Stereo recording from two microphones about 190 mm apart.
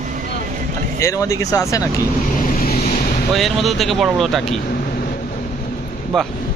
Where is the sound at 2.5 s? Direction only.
55° left (ahead or behind).